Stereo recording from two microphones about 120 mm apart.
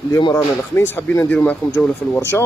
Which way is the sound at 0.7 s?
20° left (ahead or behind).